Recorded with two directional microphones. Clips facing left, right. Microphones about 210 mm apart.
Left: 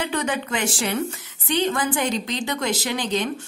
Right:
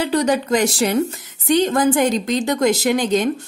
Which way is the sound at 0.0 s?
35° right (ahead or behind).